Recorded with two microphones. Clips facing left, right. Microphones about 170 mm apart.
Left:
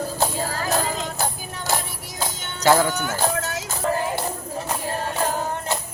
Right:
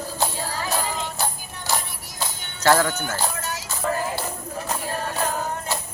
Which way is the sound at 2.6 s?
15° left (ahead or behind).